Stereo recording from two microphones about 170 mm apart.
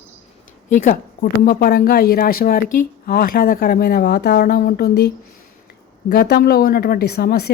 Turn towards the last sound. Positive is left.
turn(degrees=70)  # may be behind; listen again after turning